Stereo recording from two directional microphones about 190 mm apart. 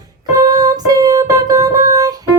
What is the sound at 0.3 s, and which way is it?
Music, 20° right (ahead or behind).